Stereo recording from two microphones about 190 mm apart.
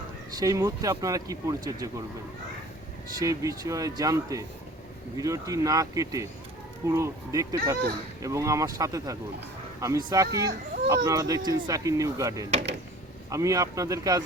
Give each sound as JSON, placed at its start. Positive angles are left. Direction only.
{"t": 0.3, "sound": "speech", "side_deg": -20}
{"t": 3.2, "sound": "speech", "side_deg": -20}